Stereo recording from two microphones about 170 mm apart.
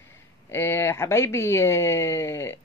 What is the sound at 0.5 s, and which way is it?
Speech, 15° left (ahead or behind).